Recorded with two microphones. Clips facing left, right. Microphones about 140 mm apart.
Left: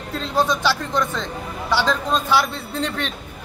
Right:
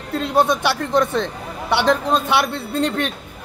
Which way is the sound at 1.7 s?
65° right (ahead or behind).